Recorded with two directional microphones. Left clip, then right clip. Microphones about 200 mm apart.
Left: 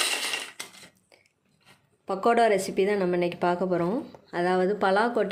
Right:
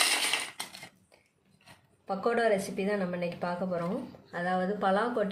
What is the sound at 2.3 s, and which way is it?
A woman's voice, 50° left (ahead or behind).